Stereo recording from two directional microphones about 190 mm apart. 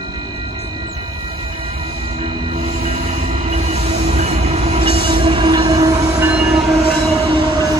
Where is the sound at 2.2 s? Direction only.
25° right (ahead or behind).